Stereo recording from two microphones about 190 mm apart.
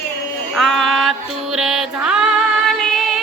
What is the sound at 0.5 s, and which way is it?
Music, centre (ahead or behind).